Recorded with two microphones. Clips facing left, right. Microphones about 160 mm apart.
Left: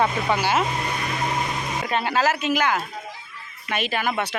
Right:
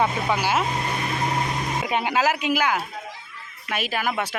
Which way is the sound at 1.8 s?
15° right (ahead or behind).